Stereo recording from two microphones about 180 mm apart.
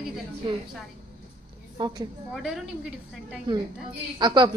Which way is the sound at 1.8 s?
20° right (ahead or behind).